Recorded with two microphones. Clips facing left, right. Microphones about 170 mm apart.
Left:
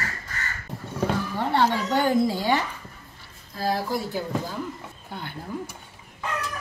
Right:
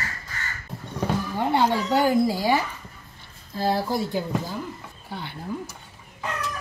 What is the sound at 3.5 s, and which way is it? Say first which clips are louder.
Speech: right 2 dB; 30° right (ahead or behind).